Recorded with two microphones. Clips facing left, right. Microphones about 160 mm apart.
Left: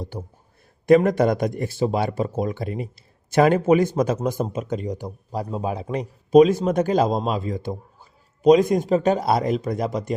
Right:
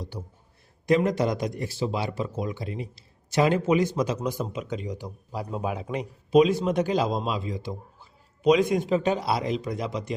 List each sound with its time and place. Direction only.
0.1 s speech: 55° left (ahead or behind)